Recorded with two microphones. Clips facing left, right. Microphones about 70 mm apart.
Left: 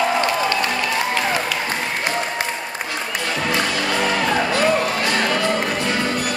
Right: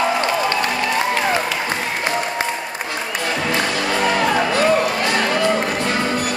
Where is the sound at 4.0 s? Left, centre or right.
Centre.